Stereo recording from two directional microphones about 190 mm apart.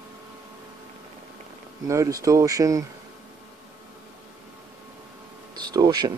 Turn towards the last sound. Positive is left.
turn(degrees=-20)  # may be behind; listen again after turning